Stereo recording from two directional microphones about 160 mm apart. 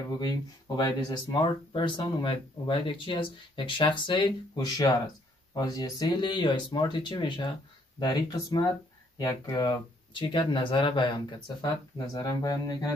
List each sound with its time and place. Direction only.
0.2 s speech: 25° left (ahead or behind)